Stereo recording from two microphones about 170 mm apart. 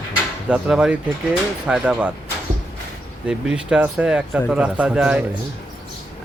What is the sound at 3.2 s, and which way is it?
A man's voice, 5° right (ahead or behind).